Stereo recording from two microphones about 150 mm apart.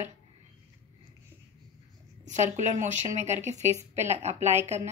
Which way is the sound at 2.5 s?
55° right (ahead or behind).